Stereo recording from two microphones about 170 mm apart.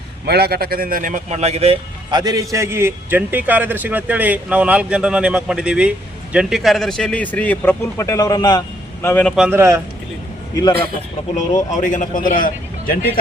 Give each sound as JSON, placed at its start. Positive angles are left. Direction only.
{"t": 0.3, "sound": "speech", "side_deg": -70}
{"t": 9.5, "sound": "speech", "side_deg": -15}
{"t": 10.5, "sound": "a man's voice", "side_deg": 20}
{"t": 11.3, "sound": "a man's voice", "side_deg": 45}